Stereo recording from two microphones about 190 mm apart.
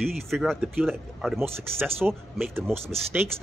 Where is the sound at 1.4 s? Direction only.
10° right (ahead or behind).